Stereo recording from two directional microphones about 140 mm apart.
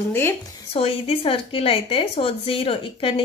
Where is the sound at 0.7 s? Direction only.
45° left (ahead or behind).